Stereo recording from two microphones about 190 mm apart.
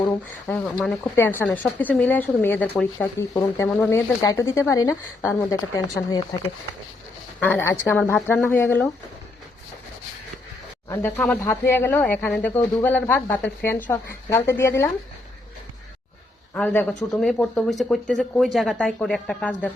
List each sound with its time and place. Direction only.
0.0 s speech: 10° left (ahead or behind)
7.3 s speech: 10° left (ahead or behind)
10.8 s speech: 15° left (ahead or behind)
16.6 s speech: 5° left (ahead or behind)